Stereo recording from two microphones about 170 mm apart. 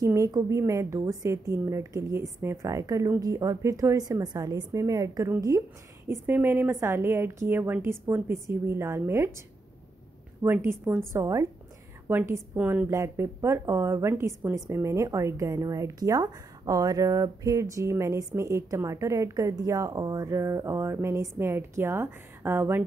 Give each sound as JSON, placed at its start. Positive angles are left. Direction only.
{"t": 0.0, "sound": "a woman's voice", "side_deg": -20}
{"t": 10.4, "sound": "a woman's voice", "side_deg": -15}